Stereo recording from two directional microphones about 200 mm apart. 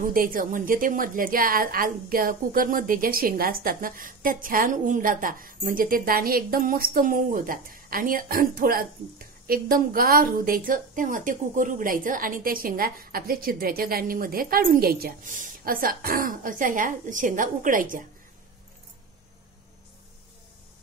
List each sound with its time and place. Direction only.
0.0 s a woman's voice: 45° right (ahead or behind)